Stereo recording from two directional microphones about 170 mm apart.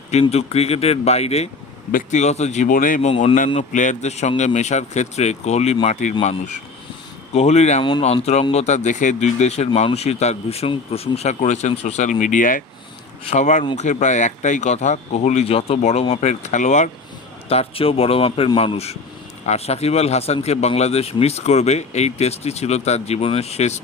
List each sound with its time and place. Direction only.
0.1 s speech: 40° left (ahead or behind)
1.9 s speech: 50° left (ahead or behind)
3.1 s speech: 35° left (ahead or behind)
3.6 s speech: 45° left (ahead or behind)
7.3 s speech: 40° left (ahead or behind)
7.8 s speech: 25° left (ahead or behind)
8.0 s speech: 40° left (ahead or behind)